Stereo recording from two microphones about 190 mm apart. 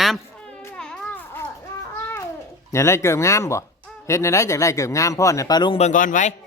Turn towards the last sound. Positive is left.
turn(degrees=45)  # may be behind; listen again after turning